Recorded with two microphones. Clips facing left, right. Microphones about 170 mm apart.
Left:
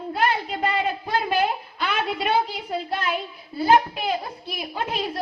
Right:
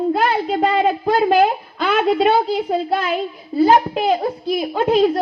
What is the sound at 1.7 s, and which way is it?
A woman's voice, 50° right (ahead or behind).